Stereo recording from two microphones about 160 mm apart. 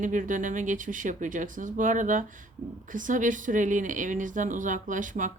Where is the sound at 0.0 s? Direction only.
55° right (ahead or behind).